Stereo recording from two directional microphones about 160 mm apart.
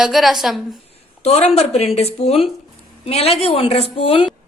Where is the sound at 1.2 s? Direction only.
40° left (ahead or behind).